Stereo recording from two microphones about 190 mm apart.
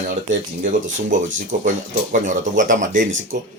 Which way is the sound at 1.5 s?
40° right (ahead or behind).